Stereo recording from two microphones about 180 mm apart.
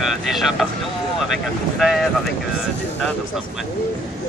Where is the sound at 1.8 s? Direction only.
Centre (ahead or behind).